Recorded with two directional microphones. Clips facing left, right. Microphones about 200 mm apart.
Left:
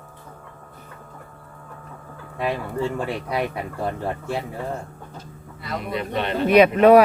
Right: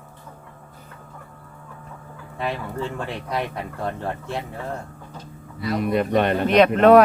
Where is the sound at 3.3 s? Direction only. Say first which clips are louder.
Left 2 dB; 10° left (ahead or behind).